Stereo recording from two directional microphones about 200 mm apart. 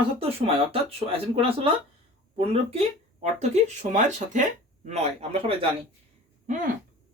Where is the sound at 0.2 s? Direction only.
30° right (ahead or behind).